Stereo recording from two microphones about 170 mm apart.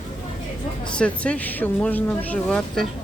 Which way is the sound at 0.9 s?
5° left (ahead or behind).